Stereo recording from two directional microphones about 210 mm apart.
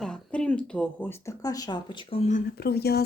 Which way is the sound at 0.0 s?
5° left (ahead or behind).